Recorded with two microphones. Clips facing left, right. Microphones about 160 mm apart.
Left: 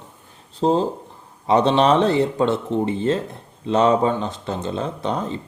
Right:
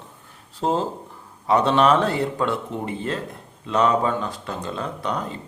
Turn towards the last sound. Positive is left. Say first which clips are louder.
# left 3 dB
turn(degrees=25)  # may be behind; listen again after turning